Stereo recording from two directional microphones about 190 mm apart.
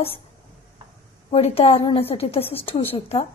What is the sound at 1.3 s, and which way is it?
A woman's voice, 30° left (ahead or behind).